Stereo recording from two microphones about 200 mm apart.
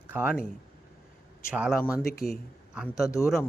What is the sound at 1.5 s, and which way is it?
Speech, 5° right (ahead or behind).